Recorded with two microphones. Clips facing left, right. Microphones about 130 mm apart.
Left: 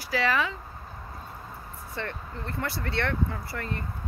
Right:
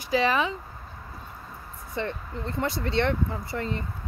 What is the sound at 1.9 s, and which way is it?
Speech, 20° right (ahead or behind).